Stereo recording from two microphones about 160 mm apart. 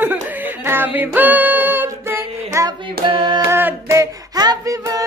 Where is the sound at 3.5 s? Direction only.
15° right (ahead or behind).